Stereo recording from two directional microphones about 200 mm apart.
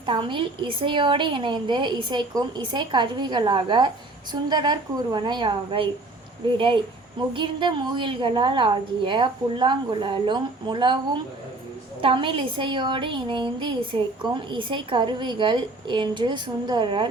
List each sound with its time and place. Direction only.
0.0 s a woman's voice: 25° right (ahead or behind)